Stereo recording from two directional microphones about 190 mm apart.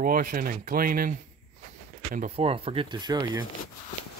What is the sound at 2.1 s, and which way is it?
Speech, 35° right (ahead or behind).